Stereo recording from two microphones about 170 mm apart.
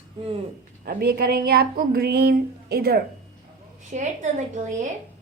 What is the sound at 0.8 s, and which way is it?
Speech, 65° right (ahead or behind).